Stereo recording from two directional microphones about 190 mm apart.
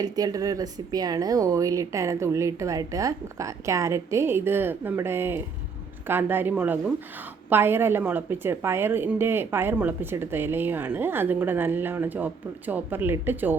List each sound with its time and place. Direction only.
0.0 s a woman's voice: 20° right (ahead or behind)